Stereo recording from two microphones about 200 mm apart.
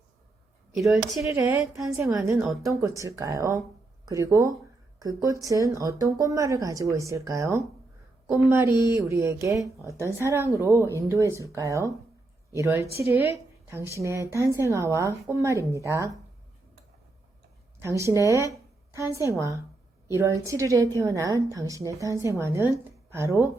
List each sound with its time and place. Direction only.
1.2 s a woman's voice: 10° right (ahead or behind)
17.8 s a woman's voice: 15° right (ahead or behind)